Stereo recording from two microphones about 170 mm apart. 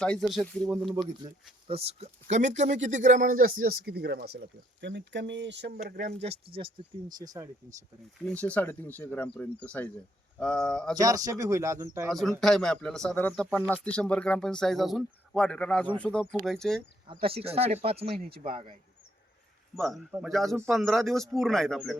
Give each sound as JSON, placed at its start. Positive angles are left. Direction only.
{"t": 0.0, "sound": "speech", "side_deg": 5}
{"t": 1.6, "sound": "speech", "side_deg": -35}
{"t": 5.8, "sound": "speech", "side_deg": -45}
{"t": 8.3, "sound": "speech", "side_deg": 10}
{"t": 10.9, "sound": "speech", "side_deg": -20}
{"t": 12.1, "sound": "speech", "side_deg": 0}
{"t": 17.1, "sound": "speech", "side_deg": -30}
{"t": 19.7, "sound": "speech", "side_deg": 0}